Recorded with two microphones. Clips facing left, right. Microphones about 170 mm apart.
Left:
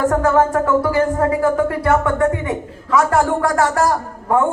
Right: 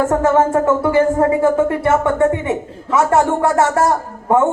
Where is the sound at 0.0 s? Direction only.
25° right (ahead or behind).